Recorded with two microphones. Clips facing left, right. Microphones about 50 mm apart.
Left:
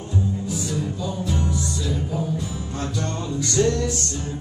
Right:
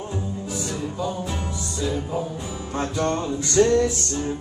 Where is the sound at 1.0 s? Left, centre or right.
Right.